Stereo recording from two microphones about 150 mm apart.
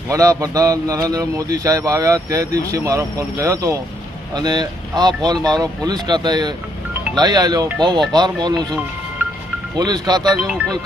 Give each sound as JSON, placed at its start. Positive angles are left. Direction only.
{"t": 0.1, "sound": "a man's voice", "side_deg": -20}
{"t": 9.7, "sound": "a man's voice", "side_deg": -25}
{"t": 10.4, "sound": "speech", "side_deg": -5}